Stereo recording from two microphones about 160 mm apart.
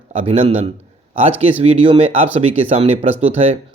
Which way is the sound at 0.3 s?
40° right (ahead or behind).